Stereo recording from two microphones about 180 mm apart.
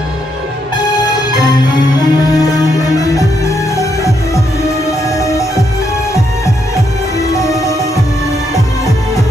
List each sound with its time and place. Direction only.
1.3 s music: 25° left (ahead or behind)
5.1 s music: 15° left (ahead or behind)
7.2 s music: 20° left (ahead or behind)